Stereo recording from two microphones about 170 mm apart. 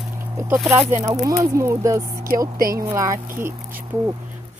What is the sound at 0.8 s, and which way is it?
Speech, 15° right (ahead or behind).